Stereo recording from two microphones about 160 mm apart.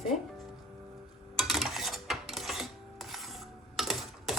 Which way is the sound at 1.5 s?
Centre (ahead or behind).